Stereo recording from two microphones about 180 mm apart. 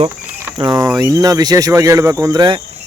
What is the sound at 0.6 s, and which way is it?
Speech, 20° right (ahead or behind).